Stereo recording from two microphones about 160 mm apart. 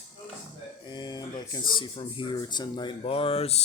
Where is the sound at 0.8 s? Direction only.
25° left (ahead or behind).